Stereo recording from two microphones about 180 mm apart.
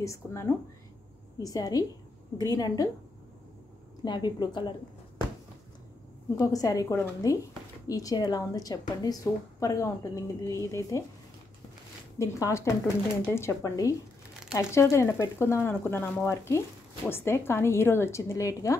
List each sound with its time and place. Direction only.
0.0 s a woman's voice: 15° left (ahead or behind)
4.0 s a woman's voice: 25° left (ahead or behind)
6.3 s a woman's voice: 20° left (ahead or behind)
12.2 s speech: 15° left (ahead or behind)